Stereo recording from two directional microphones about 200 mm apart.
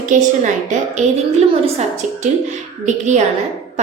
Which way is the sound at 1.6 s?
35° right (ahead or behind).